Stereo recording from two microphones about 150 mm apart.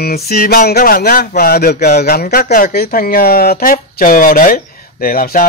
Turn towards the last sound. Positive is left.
turn(degrees=70)  # may be behind; listen again after turning